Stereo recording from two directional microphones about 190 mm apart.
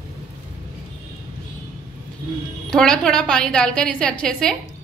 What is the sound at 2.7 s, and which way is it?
A woman's voice, 5° left (ahead or behind).